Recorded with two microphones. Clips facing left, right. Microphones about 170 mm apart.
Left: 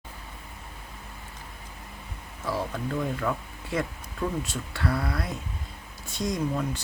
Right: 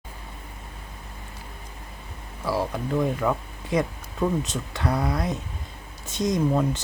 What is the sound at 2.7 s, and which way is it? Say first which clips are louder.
Speech: right 5 dB; 20° right (ahead or behind).